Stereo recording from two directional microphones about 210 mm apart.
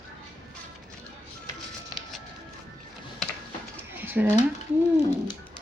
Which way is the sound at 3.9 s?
10° right (ahead or behind).